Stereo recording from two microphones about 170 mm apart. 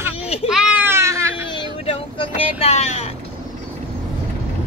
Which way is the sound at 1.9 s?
35° left (ahead or behind).